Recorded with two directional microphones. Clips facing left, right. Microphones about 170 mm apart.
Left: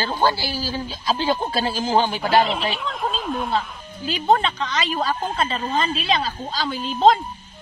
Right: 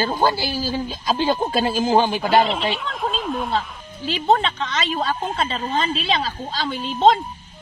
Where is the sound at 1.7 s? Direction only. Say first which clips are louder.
Right 2 dB; 15° right (ahead or behind).